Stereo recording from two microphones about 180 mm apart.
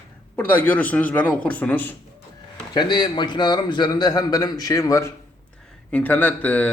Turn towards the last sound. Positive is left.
turn(degrees=10)  # may be behind; listen again after turning